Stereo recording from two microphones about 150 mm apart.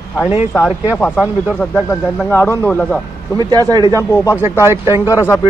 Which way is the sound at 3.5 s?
25° right (ahead or behind).